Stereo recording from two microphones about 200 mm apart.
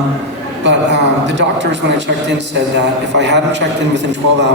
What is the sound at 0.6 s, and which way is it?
A man's voice, 60° right (ahead or behind).